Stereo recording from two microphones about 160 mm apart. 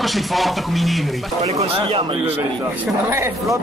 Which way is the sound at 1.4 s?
40° right (ahead or behind).